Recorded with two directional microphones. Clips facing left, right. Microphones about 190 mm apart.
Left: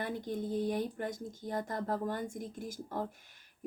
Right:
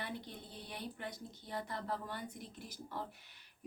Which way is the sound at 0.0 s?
45° left (ahead or behind).